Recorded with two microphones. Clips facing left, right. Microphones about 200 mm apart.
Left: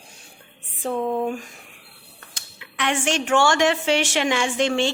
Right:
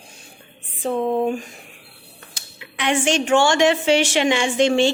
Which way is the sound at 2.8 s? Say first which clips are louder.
Right 4 dB; centre (ahead or behind).